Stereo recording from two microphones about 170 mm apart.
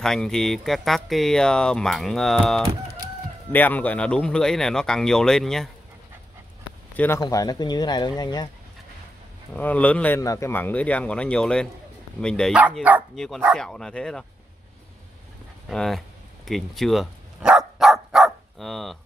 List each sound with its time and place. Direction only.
0.0 s speech: 5° left (ahead or behind)
7.0 s speech: 20° left (ahead or behind)
9.6 s speech: 10° left (ahead or behind)
15.7 s speech: centre (ahead or behind)
16.4 s dog: centre (ahead or behind)